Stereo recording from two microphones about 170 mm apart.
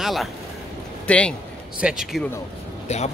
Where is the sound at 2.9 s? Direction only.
40° left (ahead or behind).